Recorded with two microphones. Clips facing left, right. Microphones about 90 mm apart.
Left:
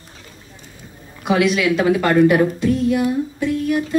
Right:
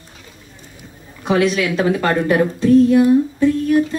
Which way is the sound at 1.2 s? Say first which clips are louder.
Even; 35° right (ahead or behind).